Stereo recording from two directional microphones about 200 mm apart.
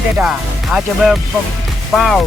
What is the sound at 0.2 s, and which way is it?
Speech, 5° right (ahead or behind).